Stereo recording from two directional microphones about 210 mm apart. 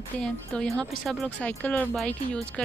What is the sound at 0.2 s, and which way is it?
Speech, centre (ahead or behind).